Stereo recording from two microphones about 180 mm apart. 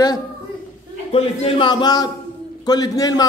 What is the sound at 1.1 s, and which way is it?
A man's voice, 30° left (ahead or behind).